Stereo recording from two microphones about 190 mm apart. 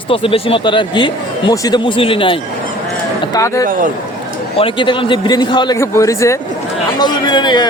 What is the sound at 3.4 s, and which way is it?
Speech, 15° left (ahead or behind).